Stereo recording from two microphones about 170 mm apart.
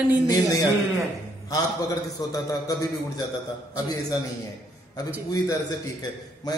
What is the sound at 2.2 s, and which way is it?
Speech, 20° left (ahead or behind).